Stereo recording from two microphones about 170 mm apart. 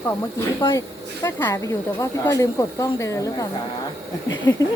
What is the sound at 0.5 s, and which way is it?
Speech, 20° left (ahead or behind).